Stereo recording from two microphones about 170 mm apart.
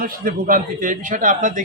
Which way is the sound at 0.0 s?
55° right (ahead or behind).